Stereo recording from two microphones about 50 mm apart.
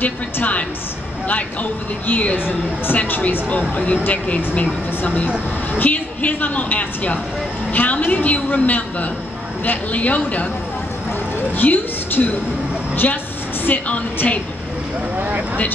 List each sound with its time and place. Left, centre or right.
0.0 s a woman's voice: left
2.3 s a woman's voice: left
11.5 s a woman's voice: left
13.8 s a woman's voice: left
15.1 s vehicle: right